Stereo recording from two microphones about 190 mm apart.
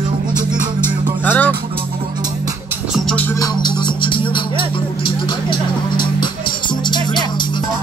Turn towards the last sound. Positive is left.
turn(degrees=25)  # may be behind; listen again after turning